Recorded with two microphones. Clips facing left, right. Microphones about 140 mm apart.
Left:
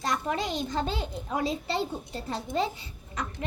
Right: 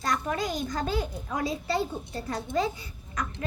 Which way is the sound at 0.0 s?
25° left (ahead or behind).